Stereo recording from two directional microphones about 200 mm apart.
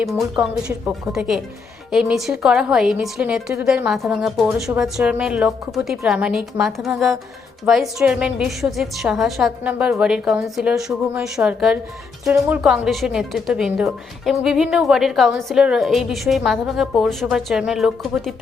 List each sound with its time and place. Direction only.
0.0 s a woman's voice: centre (ahead or behind)